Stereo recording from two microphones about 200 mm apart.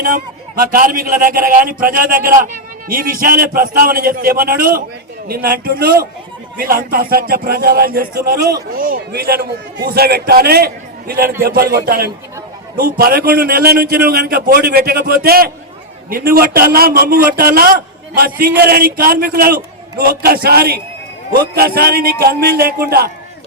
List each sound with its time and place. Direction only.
0.0 s a man's voice: 50° right (ahead or behind)